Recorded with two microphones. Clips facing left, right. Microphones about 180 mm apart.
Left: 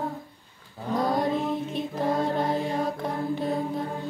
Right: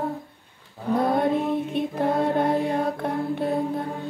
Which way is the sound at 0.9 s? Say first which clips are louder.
Right 3 dB; 60° right (ahead or behind).